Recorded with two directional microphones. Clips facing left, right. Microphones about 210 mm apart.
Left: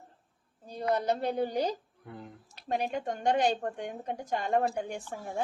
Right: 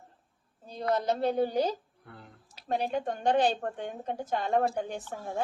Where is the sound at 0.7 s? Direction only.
10° left (ahead or behind).